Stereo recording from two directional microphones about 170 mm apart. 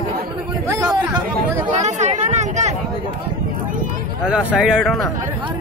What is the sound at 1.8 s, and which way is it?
Chatter, 40° right (ahead or behind).